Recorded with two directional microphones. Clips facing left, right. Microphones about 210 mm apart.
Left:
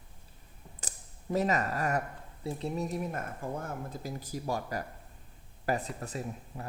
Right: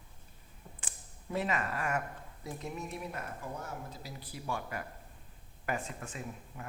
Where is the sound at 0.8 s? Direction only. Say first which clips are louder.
Left 4 dB; 40° left (ahead or behind).